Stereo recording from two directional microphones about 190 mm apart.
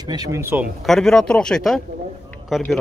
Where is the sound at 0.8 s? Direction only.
Centre (ahead or behind).